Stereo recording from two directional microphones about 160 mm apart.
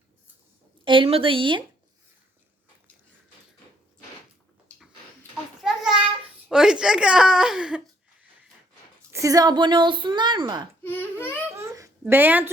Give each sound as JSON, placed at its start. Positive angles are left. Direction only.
{"t": 0.9, "sound": "speech", "side_deg": -35}
{"t": 5.6, "sound": "a sound", "side_deg": -5}
{"t": 6.5, "sound": "speech", "side_deg": -5}
{"t": 9.1, "sound": "speech", "side_deg": -20}
{"t": 10.8, "sound": "speech", "side_deg": 15}
{"t": 11.4, "sound": "a sound", "side_deg": -15}